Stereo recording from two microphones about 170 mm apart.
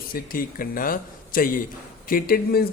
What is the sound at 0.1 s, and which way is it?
Speech, 55° left (ahead or behind).